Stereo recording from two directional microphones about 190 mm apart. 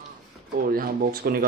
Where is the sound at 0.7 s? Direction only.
50° right (ahead or behind).